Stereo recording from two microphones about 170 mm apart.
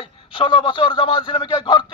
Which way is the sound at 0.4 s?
30° left (ahead or behind).